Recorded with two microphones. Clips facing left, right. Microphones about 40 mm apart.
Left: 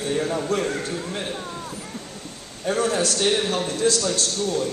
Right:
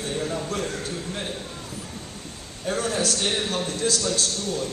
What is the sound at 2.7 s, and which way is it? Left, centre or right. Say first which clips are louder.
A man's voice: left 3 dB; centre.